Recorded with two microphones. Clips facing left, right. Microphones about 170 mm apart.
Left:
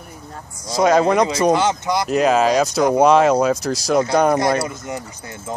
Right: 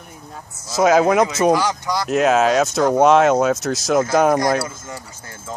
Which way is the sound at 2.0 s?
Centre (ahead or behind).